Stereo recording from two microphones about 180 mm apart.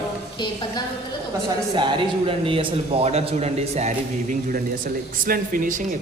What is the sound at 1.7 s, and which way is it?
A man's voice, 25° right (ahead or behind).